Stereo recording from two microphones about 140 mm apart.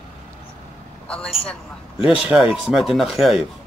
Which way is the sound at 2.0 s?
5° right (ahead or behind).